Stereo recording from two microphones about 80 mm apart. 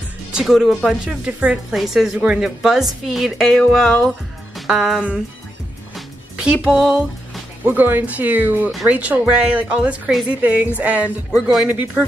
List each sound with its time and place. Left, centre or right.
0.3 s a woman's voice: centre
6.4 s a woman's voice: centre
7.6 s speech: right; by 12.0 s centre